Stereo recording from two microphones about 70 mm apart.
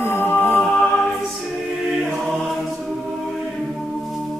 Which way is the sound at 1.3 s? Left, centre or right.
Centre.